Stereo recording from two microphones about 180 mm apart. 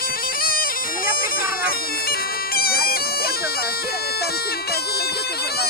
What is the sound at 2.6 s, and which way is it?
Bagpipes, 55° left (ahead or behind).